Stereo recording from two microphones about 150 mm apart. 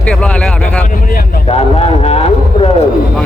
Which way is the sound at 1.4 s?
45° left (ahead or behind).